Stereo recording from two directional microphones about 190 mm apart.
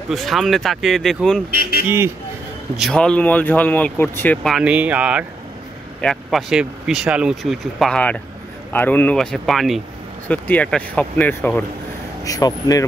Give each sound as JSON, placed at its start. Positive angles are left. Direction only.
{"t": 0.1, "sound": "speech", "side_deg": 0}
{"t": 1.5, "sound": "speech", "side_deg": -55}
{"t": 2.8, "sound": "speech", "side_deg": 5}
{"t": 12.3, "sound": "speech", "side_deg": 20}